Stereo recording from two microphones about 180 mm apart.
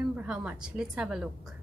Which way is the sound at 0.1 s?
5° right (ahead or behind).